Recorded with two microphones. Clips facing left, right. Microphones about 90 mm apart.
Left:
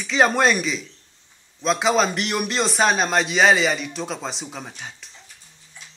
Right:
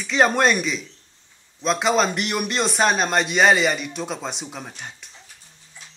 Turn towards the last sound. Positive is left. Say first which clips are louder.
# even
turn(degrees=0)  # may be behind; listen again after turning